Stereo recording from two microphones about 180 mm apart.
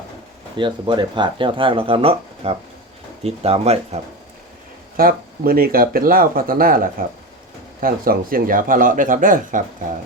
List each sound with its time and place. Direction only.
0.5 s speech: 25° right (ahead or behind)
4.9 s speech: 55° right (ahead or behind)